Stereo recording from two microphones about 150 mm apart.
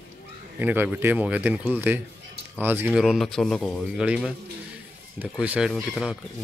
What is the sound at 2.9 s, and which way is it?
Speech, centre (ahead or behind).